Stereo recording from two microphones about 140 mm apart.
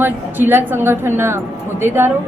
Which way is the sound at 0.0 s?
15° right (ahead or behind).